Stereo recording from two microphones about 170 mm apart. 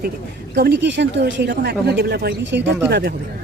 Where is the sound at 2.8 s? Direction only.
70° right (ahead or behind).